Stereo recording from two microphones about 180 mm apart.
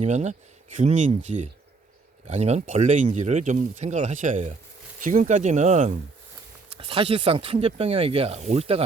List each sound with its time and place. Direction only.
0.0 s speech: 40° right (ahead or behind)